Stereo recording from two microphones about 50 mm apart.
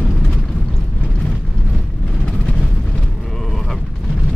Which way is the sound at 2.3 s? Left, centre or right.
Left.